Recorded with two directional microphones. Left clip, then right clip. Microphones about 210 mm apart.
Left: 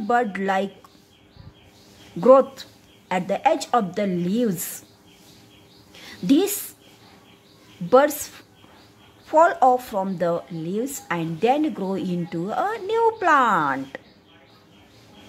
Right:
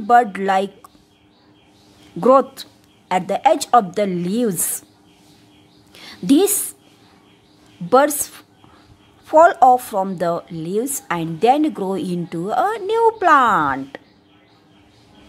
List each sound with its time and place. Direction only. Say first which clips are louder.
0.0 s speech: right 7 dB; 25° right (ahead or behind)
2.1 s speech: right 1 dB; 25° right (ahead or behind)
5.9 s a woman's voice: right 4 dB; 25° right (ahead or behind)
7.9 s speech: right 2 dB; 25° right (ahead or behind)